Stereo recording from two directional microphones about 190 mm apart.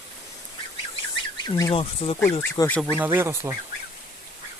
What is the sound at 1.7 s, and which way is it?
Speech, 30° left (ahead or behind).